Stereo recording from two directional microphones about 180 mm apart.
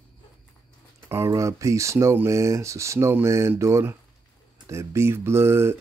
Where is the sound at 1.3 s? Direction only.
15° right (ahead or behind).